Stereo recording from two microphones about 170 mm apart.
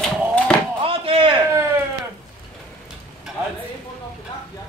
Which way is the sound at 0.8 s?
35° right (ahead or behind).